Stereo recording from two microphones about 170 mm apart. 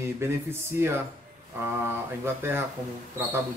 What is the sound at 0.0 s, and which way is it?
Speech, 15° right (ahead or behind).